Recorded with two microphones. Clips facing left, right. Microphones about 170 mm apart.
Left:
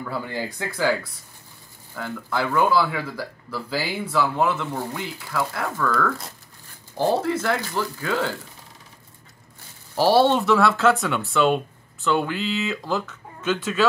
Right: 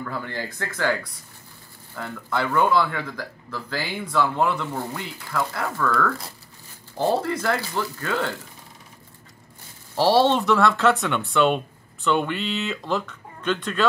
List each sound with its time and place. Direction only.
0.0 s speech: 10° left (ahead or behind)
9.9 s speech: centre (ahead or behind)